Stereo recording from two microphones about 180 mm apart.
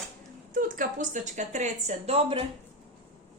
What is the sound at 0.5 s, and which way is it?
Speech, 45° right (ahead or behind).